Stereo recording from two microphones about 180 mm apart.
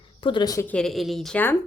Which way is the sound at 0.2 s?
25° left (ahead or behind).